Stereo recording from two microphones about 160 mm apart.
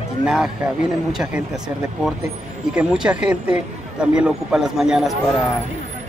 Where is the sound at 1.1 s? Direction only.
5° right (ahead or behind).